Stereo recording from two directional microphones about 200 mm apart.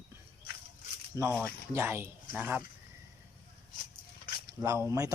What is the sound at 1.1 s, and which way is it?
Speech, 15° right (ahead or behind).